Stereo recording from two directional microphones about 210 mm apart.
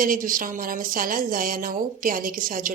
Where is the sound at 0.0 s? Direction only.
40° right (ahead or behind).